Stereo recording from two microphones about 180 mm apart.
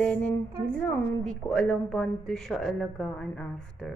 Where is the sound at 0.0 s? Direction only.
5° left (ahead or behind).